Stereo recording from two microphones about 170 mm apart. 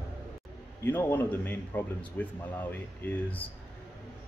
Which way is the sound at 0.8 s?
10° left (ahead or behind).